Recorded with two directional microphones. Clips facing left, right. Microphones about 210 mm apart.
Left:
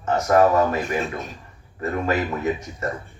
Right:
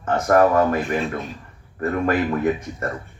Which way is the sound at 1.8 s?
55° right (ahead or behind).